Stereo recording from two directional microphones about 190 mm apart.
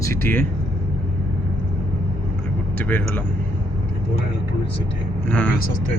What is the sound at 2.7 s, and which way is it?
Speech, 10° left (ahead or behind).